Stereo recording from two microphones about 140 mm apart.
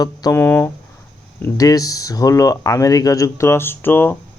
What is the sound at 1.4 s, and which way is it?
Speech, 25° left (ahead or behind).